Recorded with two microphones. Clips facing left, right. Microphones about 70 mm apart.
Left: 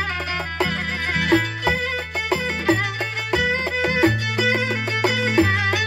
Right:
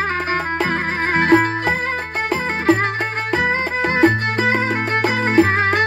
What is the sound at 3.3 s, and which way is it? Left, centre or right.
Music, right.